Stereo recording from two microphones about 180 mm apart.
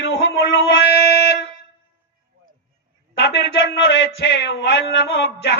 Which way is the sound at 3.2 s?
75° left (ahead or behind).